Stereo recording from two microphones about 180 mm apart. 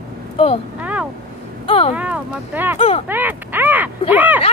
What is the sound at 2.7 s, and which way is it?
Speech, 35° left (ahead or behind).